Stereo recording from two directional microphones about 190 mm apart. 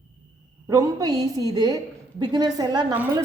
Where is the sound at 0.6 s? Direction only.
15° right (ahead or behind).